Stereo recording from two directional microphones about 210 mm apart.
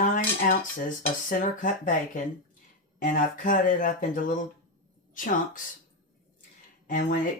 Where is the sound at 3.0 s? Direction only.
40° left (ahead or behind).